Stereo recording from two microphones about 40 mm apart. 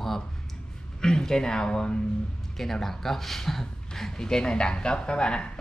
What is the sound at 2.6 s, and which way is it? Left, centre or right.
Speech, centre.